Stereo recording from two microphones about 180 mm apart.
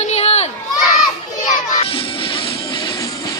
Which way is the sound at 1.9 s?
30° left (ahead or behind).